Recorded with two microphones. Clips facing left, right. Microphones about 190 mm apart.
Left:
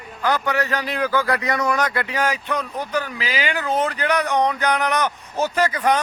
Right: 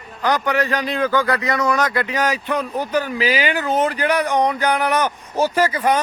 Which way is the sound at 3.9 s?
10° right (ahead or behind).